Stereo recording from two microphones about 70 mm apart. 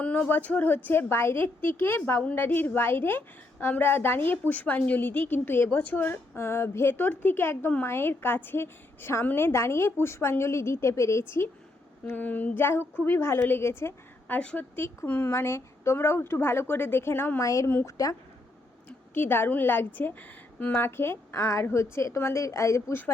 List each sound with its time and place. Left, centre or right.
0.0 s a woman's voice: left
6.3 s a woman's voice: left
12.0 s a woman's voice: left
14.3 s a woman's voice: left
15.3 s a woman's voice: left
17.4 s a woman's voice: left
18.9 s a woman's voice: left